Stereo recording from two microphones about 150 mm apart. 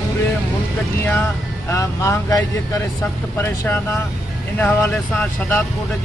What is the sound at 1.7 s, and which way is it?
Speech, 20° left (ahead or behind).